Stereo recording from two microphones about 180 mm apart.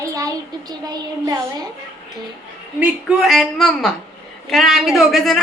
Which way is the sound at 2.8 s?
5° right (ahead or behind).